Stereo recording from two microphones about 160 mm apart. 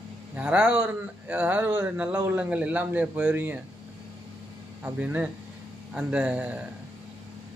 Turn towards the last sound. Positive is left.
turn(degrees=-10)  # may be behind; listen again after turning